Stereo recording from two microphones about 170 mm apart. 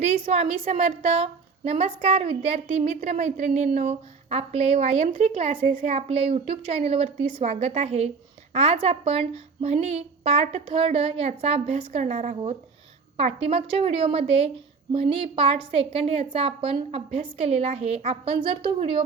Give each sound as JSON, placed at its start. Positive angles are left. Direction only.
{"t": 0.0, "sound": "a woman's voice", "side_deg": -40}